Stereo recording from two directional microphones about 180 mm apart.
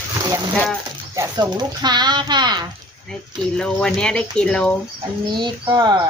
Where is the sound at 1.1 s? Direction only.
20° right (ahead or behind).